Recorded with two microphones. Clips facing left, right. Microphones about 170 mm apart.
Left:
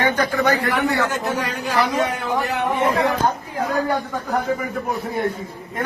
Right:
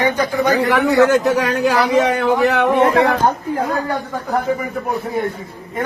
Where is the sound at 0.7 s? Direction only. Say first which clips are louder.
Right 8 dB; 80° right.